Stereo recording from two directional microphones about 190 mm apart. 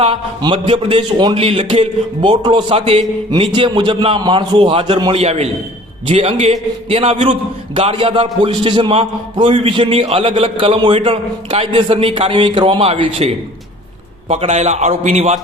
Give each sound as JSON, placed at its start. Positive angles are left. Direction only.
{"t": 0.0, "sound": "a man's voice", "side_deg": -30}